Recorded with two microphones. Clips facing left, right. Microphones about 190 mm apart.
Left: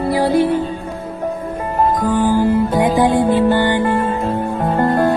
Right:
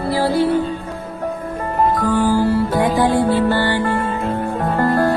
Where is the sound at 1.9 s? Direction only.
15° left (ahead or behind).